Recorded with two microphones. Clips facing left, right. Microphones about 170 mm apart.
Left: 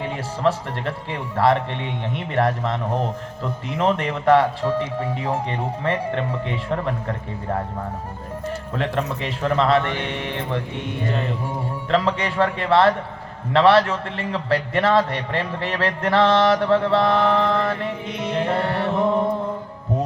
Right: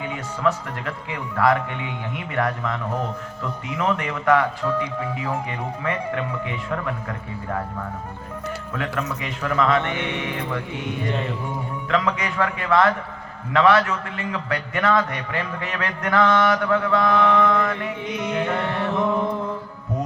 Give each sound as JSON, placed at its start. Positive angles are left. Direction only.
{"t": 0.4, "sound": "a man's voice", "side_deg": 30}
{"t": 8.7, "sound": "a man's voice", "side_deg": 30}
{"t": 11.1, "sound": "music", "side_deg": 0}
{"t": 11.9, "sound": "a man's voice", "side_deg": 30}